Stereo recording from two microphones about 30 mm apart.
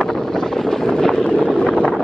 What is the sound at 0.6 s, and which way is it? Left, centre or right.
Vehicle, centre.